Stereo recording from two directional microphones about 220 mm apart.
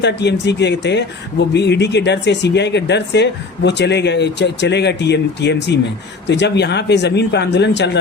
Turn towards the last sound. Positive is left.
turn(degrees=50)  # may be behind; listen again after turning